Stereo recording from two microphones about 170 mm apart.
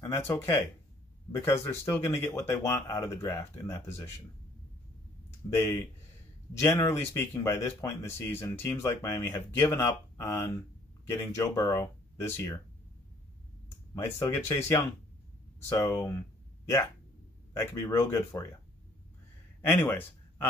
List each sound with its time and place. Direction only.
0.1 s speech: 15° left (ahead or behind)
5.5 s speech: 15° left (ahead or behind)
13.9 s speech: 15° left (ahead or behind)
17.6 s speech: 20° left (ahead or behind)
19.6 s a man's voice: 10° left (ahead or behind)